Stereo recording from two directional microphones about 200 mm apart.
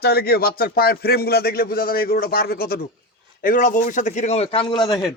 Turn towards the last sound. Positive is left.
turn(degrees=20)  # may be behind; listen again after turning